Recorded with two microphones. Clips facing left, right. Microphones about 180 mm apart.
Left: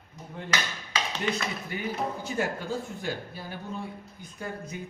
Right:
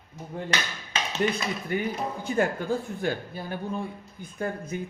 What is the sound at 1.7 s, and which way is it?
A man's voice, 55° right (ahead or behind).